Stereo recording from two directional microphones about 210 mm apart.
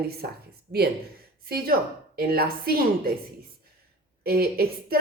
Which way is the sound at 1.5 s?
45° right (ahead or behind).